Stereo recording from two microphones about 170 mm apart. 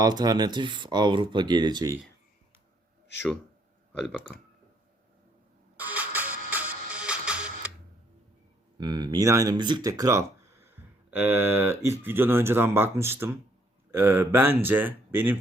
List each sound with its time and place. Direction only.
0.0 s speech: 25° right (ahead or behind)
5.7 s music: 10° right (ahead or behind)
8.8 s speech: 25° right (ahead or behind)